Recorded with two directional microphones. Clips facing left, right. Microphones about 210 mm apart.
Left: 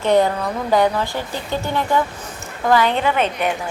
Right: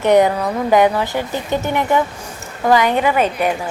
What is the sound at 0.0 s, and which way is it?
A woman's voice, 20° right (ahead or behind).